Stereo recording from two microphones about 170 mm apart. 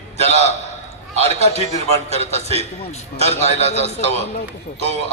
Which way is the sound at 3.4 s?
40° left (ahead or behind).